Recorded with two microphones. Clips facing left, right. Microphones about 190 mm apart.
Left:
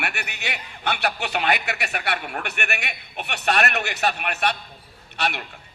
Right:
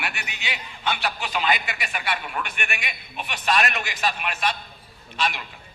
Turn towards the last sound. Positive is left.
turn(degrees=65)  # may be behind; listen again after turning